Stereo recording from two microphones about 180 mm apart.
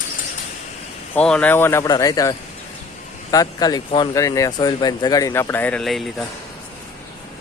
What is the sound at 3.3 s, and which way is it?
Speech, 20° left (ahead or behind).